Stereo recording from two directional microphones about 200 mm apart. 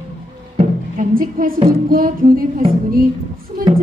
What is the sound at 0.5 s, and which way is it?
Music, 40° right (ahead or behind).